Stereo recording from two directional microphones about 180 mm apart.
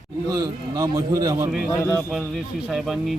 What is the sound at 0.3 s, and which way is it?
A man's voice, 15° right (ahead or behind).